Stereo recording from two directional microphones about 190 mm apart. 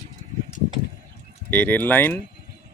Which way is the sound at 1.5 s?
10° left (ahead or behind).